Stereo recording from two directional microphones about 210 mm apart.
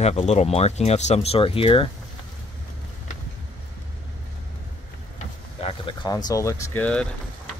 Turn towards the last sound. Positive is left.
turn(degrees=5)  # may be behind; listen again after turning